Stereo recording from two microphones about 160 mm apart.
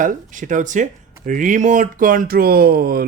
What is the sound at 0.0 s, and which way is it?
Speech, 55° right (ahead or behind).